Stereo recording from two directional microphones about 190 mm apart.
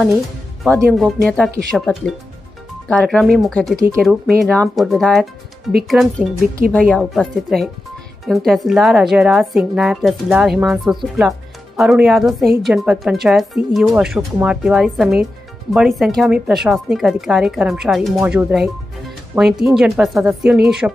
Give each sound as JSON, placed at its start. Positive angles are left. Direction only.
{"t": 0.8, "sound": "a woman's voice", "side_deg": 0}